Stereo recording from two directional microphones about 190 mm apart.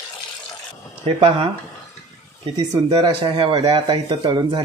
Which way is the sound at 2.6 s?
20° right (ahead or behind).